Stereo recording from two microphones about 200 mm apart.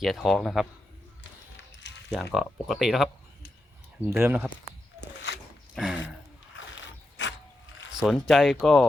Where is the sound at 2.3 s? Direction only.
Centre (ahead or behind).